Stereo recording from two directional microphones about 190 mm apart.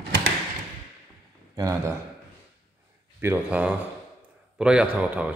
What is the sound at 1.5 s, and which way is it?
Speech, 15° right (ahead or behind).